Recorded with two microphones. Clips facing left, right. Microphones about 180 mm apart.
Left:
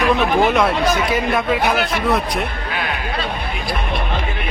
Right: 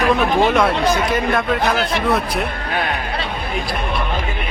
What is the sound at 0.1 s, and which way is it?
Speech, centre (ahead or behind).